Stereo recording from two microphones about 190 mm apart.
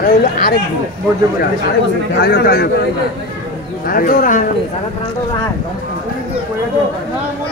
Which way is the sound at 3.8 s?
50° left (ahead or behind).